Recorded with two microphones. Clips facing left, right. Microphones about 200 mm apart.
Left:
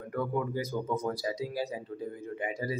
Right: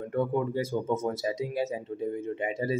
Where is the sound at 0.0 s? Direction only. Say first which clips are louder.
Right 4 dB; 25° right (ahead or behind).